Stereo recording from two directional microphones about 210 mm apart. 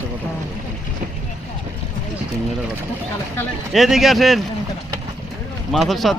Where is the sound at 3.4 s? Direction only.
Centre (ahead or behind).